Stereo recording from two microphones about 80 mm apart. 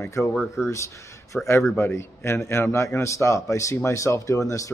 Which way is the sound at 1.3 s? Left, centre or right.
Left.